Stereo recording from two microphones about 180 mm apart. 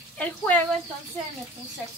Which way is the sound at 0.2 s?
10° left (ahead or behind).